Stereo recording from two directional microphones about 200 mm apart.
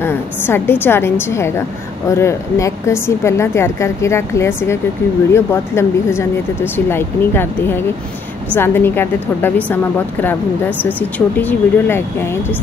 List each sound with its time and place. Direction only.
0.0 s a woman's voice: 10° left (ahead or behind)
11.0 s a woman's voice: 10° left (ahead or behind)